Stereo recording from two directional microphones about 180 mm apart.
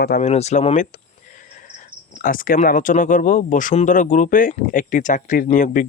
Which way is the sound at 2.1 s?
50° left (ahead or behind).